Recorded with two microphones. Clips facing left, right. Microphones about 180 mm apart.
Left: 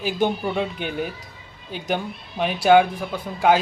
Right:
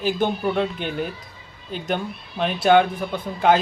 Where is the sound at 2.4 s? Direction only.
10° left (ahead or behind).